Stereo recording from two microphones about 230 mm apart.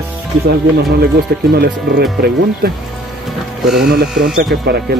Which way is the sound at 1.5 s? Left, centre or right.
Right.